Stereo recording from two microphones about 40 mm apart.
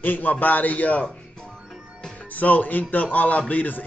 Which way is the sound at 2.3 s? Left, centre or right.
Left.